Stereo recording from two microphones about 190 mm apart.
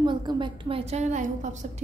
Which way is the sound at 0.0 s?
25° right (ahead or behind).